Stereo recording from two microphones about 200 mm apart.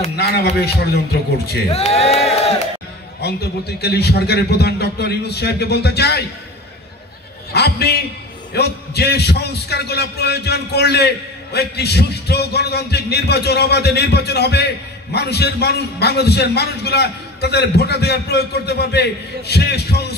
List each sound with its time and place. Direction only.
0.1 s a man's voice: 50° left (ahead or behind)
1.7 s speech: 30° left (ahead or behind)
3.2 s a man's voice: 55° left (ahead or behind)
7.5 s a man's voice: 55° left (ahead or behind)